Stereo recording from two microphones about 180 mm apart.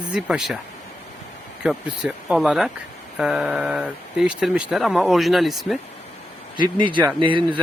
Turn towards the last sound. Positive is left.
turn(degrees=-25)  # may be behind; listen again after turning